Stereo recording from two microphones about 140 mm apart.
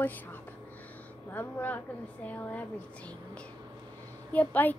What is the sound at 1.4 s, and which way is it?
Speech, 15° left (ahead or behind).